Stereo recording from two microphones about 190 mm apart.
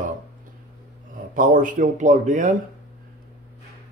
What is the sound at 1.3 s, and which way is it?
Speech, 45° right (ahead or behind).